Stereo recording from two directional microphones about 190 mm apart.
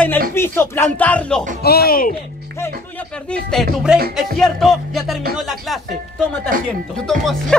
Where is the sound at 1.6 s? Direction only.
55° left (ahead or behind).